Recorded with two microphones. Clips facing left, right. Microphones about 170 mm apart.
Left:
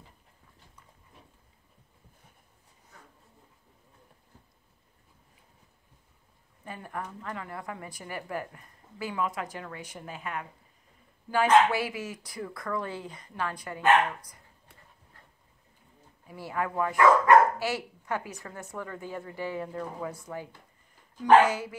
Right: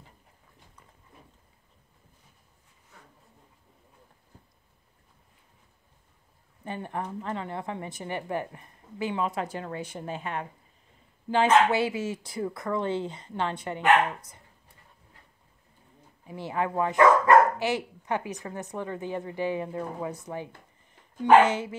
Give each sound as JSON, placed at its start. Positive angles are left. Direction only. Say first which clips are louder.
{"t": 6.6, "sound": "speech", "louder": "right 4 dB", "side_deg": -25}
{"t": 16.3, "sound": "speech", "louder": "right 3 dB", "side_deg": -20}